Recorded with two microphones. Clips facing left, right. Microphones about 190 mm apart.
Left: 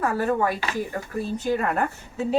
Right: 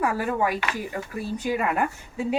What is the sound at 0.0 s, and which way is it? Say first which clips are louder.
A woman's voice: left 2 dB; 10° right (ahead or behind).